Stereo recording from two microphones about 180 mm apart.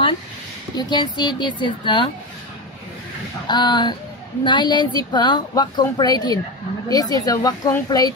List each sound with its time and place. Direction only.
0.7 s speech: 25° left (ahead or behind)
3.4 s speech: 25° left (ahead or behind)